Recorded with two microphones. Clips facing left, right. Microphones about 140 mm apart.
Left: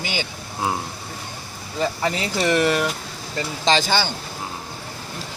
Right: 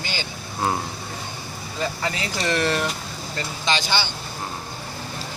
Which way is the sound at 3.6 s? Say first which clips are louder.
Left 5 dB; 45° left (ahead or behind).